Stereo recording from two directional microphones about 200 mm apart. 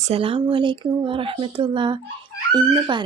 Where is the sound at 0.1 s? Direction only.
25° right (ahead or behind).